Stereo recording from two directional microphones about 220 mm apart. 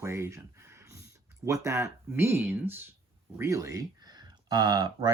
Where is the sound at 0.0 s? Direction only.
10° right (ahead or behind).